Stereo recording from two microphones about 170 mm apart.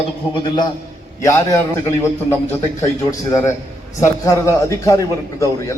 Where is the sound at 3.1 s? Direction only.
20° left (ahead or behind).